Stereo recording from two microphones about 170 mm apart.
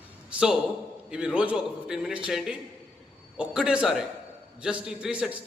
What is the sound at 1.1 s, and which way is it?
A man's voice, 5° right (ahead or behind).